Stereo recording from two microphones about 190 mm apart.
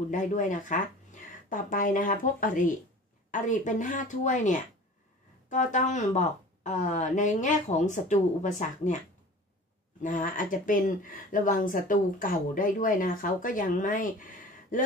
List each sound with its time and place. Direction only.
0.1 s a woman's voice: 40° left (ahead or behind)
10.0 s speech: 45° left (ahead or behind)